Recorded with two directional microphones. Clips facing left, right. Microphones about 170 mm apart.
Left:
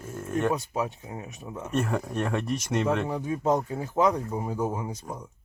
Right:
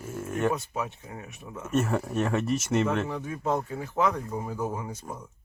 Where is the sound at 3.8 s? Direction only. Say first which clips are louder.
Left 3 dB; 35° left (ahead or behind).